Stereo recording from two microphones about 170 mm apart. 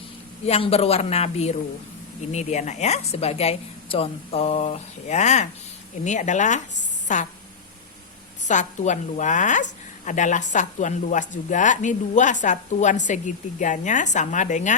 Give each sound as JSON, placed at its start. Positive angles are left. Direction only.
{"t": 0.4, "sound": "a woman's voice", "side_deg": 35}
{"t": 8.4, "sound": "a woman's voice", "side_deg": 45}